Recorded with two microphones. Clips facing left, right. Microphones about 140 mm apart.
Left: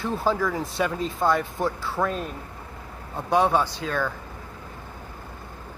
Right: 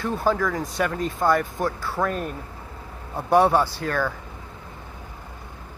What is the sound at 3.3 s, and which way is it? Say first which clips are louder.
Speech: right 3 dB; 10° right (ahead or behind).